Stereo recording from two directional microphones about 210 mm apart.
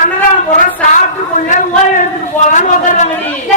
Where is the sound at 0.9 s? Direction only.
35° left (ahead or behind).